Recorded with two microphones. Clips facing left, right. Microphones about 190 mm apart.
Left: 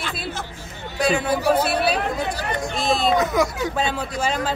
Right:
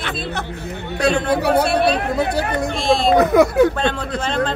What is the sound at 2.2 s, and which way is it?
A child's voice, 60° right (ahead or behind).